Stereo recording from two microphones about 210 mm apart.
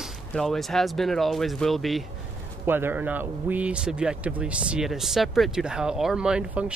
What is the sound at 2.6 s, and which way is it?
Speech, 10° right (ahead or behind).